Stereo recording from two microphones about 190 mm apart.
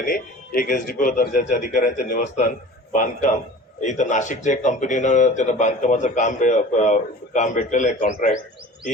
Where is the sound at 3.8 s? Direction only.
40° left (ahead or behind).